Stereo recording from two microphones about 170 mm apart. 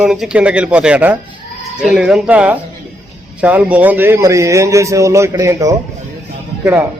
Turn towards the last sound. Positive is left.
turn(degrees=-10)  # may be behind; listen again after turning